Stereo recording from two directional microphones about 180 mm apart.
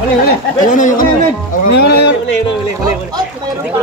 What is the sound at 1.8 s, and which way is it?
Speech, 65° left (ahead or behind).